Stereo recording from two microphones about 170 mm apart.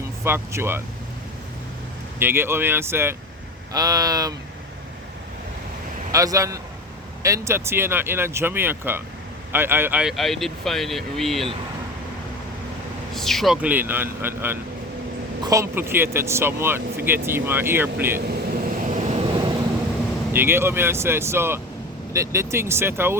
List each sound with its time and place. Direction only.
0.3 s speech: 15° right (ahead or behind)
2.1 s speech: 15° right (ahead or behind)
6.1 s speech: 20° right (ahead or behind); by 11.4 s centre (ahead or behind)
13.1 s speech: centre (ahead or behind)
15.7 s speech: 15° right (ahead or behind)
18.3 s vehicle: 50° right (ahead or behind)
20.3 s speech: 15° right (ahead or behind)